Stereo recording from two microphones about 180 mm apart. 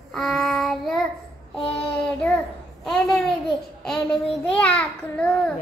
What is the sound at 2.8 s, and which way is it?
Child singing, centre (ahead or behind).